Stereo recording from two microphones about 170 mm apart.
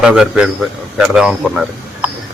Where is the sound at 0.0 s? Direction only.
5° right (ahead or behind).